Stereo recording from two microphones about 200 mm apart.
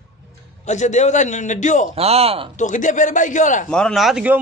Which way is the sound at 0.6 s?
35° left (ahead or behind).